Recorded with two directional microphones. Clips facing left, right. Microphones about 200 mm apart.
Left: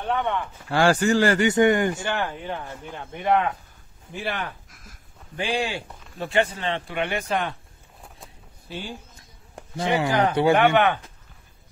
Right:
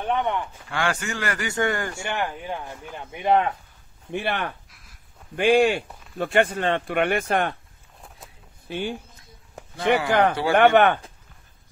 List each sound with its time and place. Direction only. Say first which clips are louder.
0.0 s speech: right 1 dB; 15° right (ahead or behind)
0.7 s a man's voice: left 10 dB; 35° left (ahead or behind); by 2.0 s 20° left (ahead or behind)
2.0 s speech: left 1 dB; 15° right (ahead or behind)
4.1 s speech: right 3 dB; 60° right (ahead or behind)
4.6 s a sound: left 6 dB; 45° left (ahead or behind)
5.3 s speech: right 9 dB; 55° right (ahead or behind)
8.6 s speech: right 6 dB; 60° right (ahead or behind)
10.0 s speech: right 1 dB; 55° right (ahead or behind)
10.5 s speech: right 5 dB; 45° right (ahead or behind)